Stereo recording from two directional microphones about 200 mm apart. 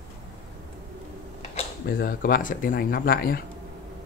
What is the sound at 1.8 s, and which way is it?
Speech, 45° left (ahead or behind).